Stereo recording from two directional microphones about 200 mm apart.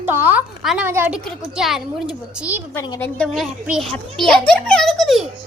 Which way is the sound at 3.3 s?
5° right (ahead or behind).